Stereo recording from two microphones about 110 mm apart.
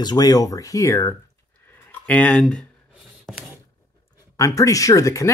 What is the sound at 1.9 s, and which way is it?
Speech, 15° left (ahead or behind).